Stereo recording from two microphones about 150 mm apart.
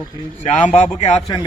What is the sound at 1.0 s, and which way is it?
Speech, 45° left (ahead or behind).